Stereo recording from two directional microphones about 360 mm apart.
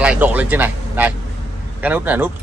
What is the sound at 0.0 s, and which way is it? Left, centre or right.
Speech, centre.